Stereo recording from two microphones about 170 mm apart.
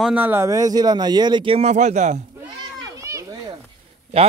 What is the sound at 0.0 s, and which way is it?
Speech, 10° right (ahead or behind).